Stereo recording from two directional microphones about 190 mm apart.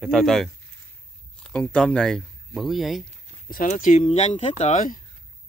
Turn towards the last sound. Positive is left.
turn(degrees=40)  # may be behind; listen again after turning